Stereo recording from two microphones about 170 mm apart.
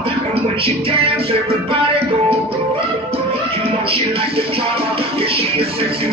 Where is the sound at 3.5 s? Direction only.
35° right (ahead or behind).